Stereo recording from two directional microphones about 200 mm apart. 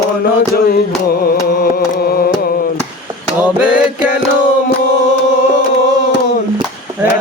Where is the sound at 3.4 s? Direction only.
5° right (ahead or behind).